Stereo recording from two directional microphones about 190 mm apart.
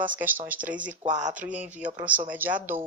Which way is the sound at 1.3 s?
10° right (ahead or behind).